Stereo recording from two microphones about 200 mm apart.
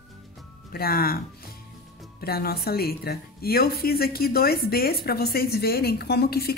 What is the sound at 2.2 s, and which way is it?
A woman's voice, 50° left (ahead or behind).